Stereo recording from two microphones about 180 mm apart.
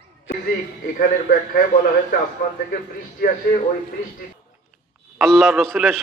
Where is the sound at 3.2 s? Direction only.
55° left (ahead or behind).